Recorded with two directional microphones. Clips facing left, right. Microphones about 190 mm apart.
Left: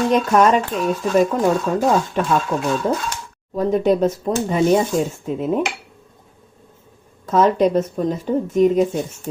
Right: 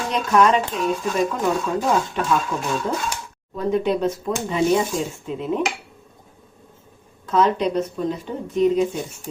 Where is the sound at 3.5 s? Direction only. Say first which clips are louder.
Left 4 dB; 45° left (ahead or behind).